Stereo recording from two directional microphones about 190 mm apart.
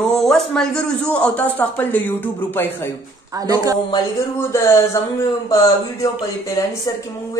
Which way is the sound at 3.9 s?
15° left (ahead or behind).